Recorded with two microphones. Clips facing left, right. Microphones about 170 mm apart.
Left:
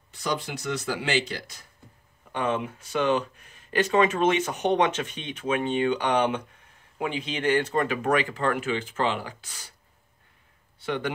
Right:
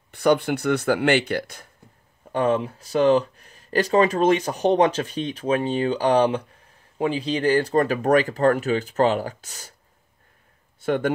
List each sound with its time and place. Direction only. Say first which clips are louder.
0.1 s speech: right 11 dB; 60° right (ahead or behind)
2.3 s speech: right 6 dB; 35° right (ahead or behind)
10.8 s speech: right 7 dB; 45° right (ahead or behind)